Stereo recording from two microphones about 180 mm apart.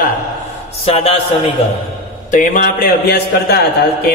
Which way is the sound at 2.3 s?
45° left (ahead or behind).